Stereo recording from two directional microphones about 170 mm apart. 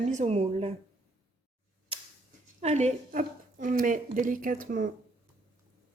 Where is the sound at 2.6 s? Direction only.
40° right (ahead or behind).